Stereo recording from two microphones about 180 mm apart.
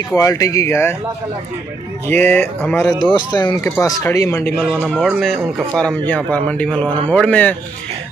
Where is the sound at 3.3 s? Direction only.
25° left (ahead or behind).